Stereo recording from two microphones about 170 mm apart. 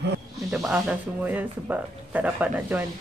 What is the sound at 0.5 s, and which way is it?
Speech, 5° right (ahead or behind).